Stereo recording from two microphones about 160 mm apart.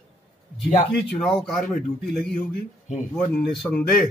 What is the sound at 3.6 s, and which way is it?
Speech, 10° left (ahead or behind).